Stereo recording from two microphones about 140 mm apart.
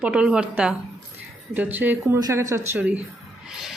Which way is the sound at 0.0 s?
5° right (ahead or behind).